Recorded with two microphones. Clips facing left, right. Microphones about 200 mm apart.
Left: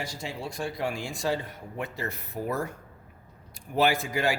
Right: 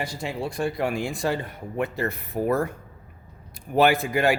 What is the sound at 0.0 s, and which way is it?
Speech, 60° right (ahead or behind).